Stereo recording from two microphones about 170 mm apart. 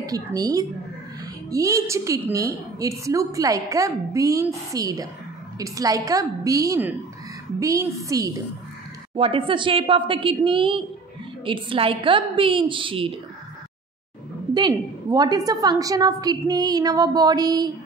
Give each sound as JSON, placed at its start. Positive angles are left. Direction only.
{"t": 0.0, "sound": "a woman's voice", "side_deg": -20}
{"t": 9.1, "sound": "a woman's voice", "side_deg": -30}
{"t": 14.5, "sound": "a woman's voice", "side_deg": -25}